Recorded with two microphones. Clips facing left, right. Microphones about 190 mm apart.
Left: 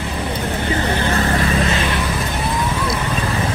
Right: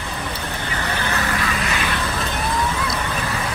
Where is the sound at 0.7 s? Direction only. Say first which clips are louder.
Left 3 dB; 25° left (ahead or behind).